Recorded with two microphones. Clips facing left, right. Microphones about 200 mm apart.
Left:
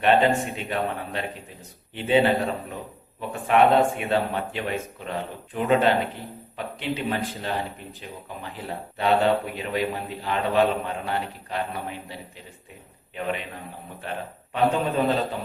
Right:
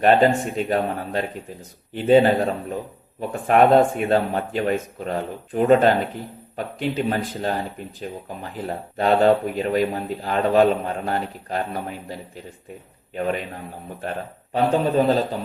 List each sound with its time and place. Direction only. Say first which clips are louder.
0.0 s a man's voice: right 4 dB; 40° right (ahead or behind)
0.3 s a man's voice: right 4 dB; centre (ahead or behind)
0.6 s a man's voice: right 5 dB; 40° right (ahead or behind)
13.1 s a man's voice: right 5 dB; 45° right (ahead or behind)